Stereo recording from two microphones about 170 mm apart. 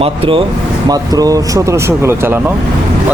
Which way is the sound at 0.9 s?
20° right (ahead or behind).